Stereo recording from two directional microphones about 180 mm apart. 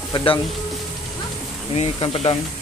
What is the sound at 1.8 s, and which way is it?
Speech, 30° left (ahead or behind).